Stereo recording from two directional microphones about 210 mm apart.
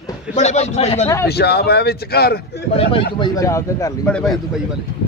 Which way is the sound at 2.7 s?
60° left (ahead or behind).